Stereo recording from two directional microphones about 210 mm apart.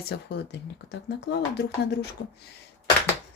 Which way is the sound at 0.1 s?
55° left (ahead or behind).